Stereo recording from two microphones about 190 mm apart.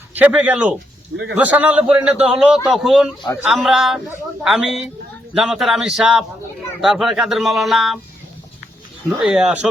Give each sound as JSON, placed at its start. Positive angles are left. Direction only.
{"t": 0.1, "sound": "a man's voice", "side_deg": -10}
{"t": 1.1, "sound": "a man's voice", "side_deg": -80}
{"t": 1.4, "sound": "a man's voice", "side_deg": -10}
{"t": 9.0, "sound": "speech", "side_deg": -5}